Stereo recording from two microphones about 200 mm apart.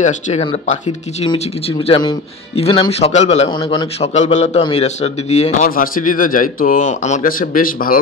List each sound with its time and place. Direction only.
0.0 s speech: 30° left (ahead or behind)
4.1 s speech: 35° left (ahead or behind)